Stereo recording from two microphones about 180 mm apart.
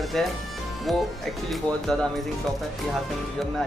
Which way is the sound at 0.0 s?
Centre (ahead or behind).